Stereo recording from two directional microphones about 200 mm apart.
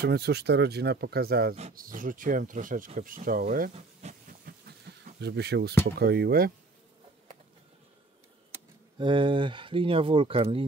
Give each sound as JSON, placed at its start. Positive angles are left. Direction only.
{"t": 0.0, "sound": "speech", "side_deg": -55}
{"t": 8.9, "sound": "speech", "side_deg": -25}